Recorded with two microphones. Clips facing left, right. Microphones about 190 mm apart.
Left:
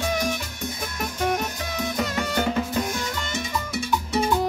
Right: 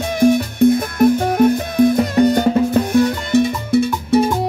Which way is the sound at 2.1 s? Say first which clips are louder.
Right 15 dB; 40° right (ahead or behind).